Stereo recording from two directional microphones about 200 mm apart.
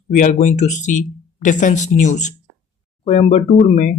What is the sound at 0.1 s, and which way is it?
Speech, 40° left (ahead or behind).